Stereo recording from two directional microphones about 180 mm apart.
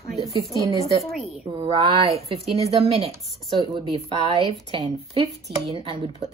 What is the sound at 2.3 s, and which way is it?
A woman's voice, 30° right (ahead or behind).